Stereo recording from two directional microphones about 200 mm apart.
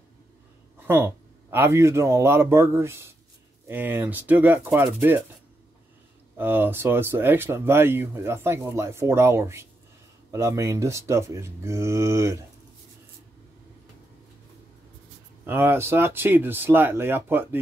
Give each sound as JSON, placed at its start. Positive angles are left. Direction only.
{"t": 0.7, "sound": "speech", "side_deg": -10}
{"t": 6.3, "sound": "speech", "side_deg": -10}
{"t": 15.4, "sound": "speech", "side_deg": -10}